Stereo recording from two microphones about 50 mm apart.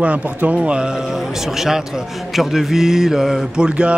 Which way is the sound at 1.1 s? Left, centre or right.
Centre.